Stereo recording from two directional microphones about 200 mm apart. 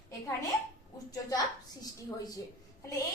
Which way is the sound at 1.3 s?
15° left (ahead or behind).